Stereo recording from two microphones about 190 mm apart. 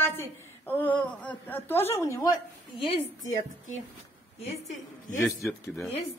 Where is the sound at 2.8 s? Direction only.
30° left (ahead or behind).